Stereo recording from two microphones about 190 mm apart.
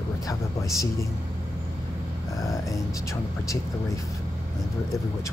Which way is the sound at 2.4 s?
15° left (ahead or behind).